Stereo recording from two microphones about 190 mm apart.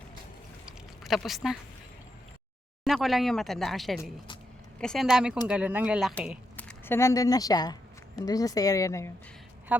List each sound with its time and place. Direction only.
0.6 s a sound: centre (ahead or behind)
2.8 s speech: centre (ahead or behind)
6.6 s speech: 10° left (ahead or behind)